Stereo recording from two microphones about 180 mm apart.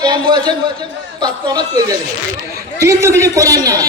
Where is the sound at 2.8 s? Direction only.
15° right (ahead or behind).